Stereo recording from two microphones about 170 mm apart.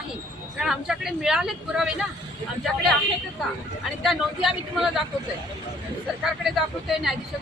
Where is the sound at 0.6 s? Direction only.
5° right (ahead or behind).